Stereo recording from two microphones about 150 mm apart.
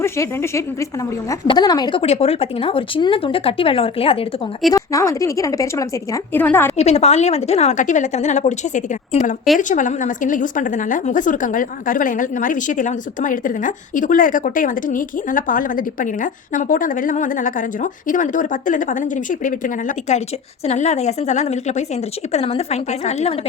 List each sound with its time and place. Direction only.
0.0 s a woman's voice: 15° left (ahead or behind)
2.0 s speech: 40° left (ahead or behind)
4.7 s a woman's voice: 20° left (ahead or behind)
6.7 s a woman's voice: 45° left (ahead or behind)